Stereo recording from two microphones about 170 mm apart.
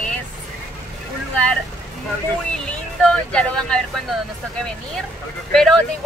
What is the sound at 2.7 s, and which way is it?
Speech, 5° left (ahead or behind).